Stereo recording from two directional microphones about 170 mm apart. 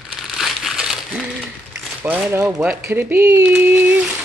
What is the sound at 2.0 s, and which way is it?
Speech, 10° right (ahead or behind).